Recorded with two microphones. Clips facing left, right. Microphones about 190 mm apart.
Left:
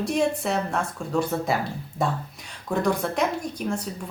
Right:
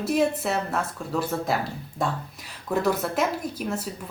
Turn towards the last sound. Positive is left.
turn(degrees=-5)  # may be behind; listen again after turning